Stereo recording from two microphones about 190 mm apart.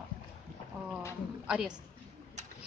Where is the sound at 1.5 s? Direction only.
5° right (ahead or behind).